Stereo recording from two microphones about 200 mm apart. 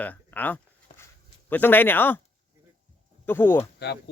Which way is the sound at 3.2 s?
10° left (ahead or behind).